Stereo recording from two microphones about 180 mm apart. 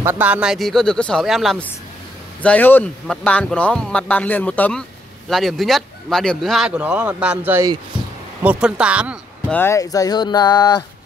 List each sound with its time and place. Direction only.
0.0 s speech: 10° right (ahead or behind)
9.5 s speech: 15° left (ahead or behind)